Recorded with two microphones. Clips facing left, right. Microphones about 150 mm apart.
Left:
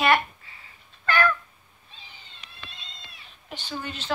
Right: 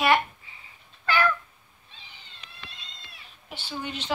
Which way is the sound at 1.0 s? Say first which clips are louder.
Left 1 dB; 10° right (ahead or behind).